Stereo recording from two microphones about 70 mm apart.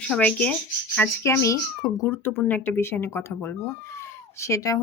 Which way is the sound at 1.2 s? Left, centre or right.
Left.